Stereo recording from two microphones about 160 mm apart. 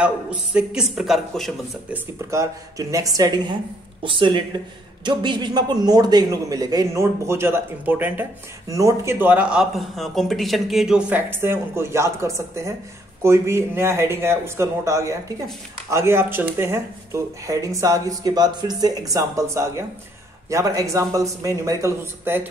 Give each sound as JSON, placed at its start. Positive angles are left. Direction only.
{"t": 0.0, "sound": "speech", "side_deg": -5}
{"t": 2.3, "sound": "a man's voice", "side_deg": -20}